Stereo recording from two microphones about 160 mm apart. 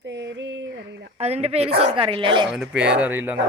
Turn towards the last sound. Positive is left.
turn(degrees=-15)  # may be behind; listen again after turning